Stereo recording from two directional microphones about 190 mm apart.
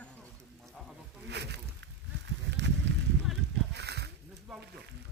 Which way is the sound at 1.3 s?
65° right (ahead or behind).